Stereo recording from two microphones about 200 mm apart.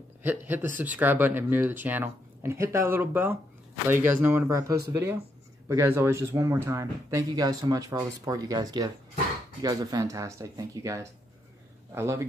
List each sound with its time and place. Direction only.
0.2 s a man's voice: 10° right (ahead or behind)